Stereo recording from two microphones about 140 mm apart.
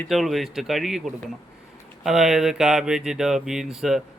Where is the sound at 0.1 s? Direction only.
Centre (ahead or behind).